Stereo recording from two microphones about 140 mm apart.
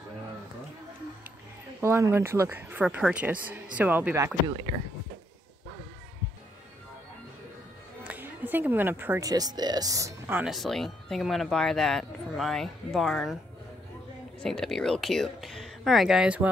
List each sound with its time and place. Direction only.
1.8 s speech: 20° right (ahead or behind)
8.0 s a sound: 10° right (ahead or behind)
9.2 s speech: 25° right (ahead or behind)
10.4 s speech: centre (ahead or behind)
14.4 s speech: 5° left (ahead or behind)